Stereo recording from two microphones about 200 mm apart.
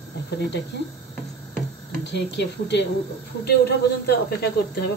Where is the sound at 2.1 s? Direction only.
60° left (ahead or behind).